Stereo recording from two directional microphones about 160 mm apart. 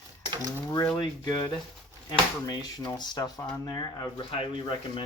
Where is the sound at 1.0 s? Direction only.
25° left (ahead or behind).